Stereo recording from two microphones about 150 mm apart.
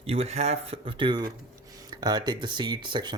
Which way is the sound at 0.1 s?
45° right (ahead or behind).